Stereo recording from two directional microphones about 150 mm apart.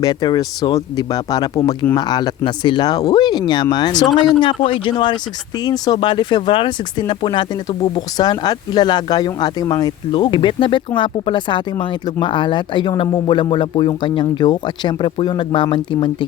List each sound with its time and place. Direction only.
0.0 s speech: 25° left (ahead or behind)